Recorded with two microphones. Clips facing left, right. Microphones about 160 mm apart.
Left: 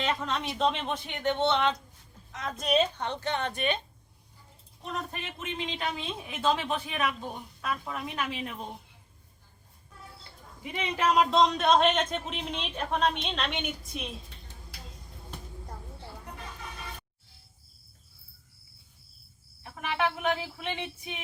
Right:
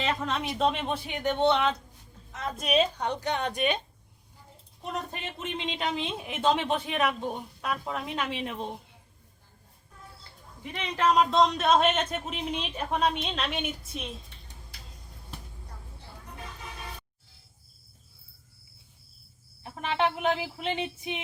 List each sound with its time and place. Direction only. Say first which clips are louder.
0.0 s speech: right 1 dB; 5° right (ahead or behind)
5.7 s speech: right 3 dB; 20° right (ahead or behind)
10.6 s speech: right 1 dB; 10° left (ahead or behind)
19.6 s speech: right 2 dB; 25° right (ahead or behind)